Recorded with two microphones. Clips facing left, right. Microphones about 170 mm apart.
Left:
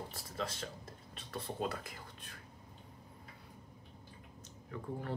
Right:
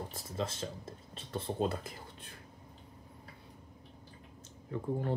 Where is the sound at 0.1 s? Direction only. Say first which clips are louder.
Right 4 dB; 25° right (ahead or behind).